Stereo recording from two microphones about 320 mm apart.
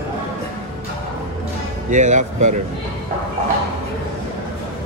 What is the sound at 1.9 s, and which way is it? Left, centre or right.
Speech, right.